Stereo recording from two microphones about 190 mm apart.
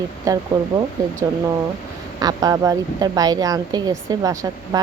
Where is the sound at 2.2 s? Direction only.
20° right (ahead or behind).